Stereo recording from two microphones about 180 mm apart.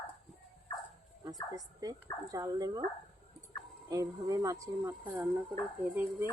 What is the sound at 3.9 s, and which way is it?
Speech, 20° right (ahead or behind).